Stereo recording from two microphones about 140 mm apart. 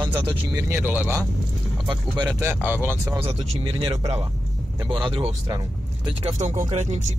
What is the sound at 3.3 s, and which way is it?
Speech, 40° right (ahead or behind).